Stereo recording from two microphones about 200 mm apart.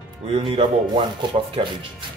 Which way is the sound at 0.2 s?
30° right (ahead or behind).